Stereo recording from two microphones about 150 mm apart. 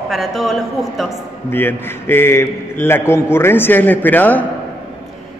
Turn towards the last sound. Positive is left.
turn(degrees=10)  # may be behind; listen again after turning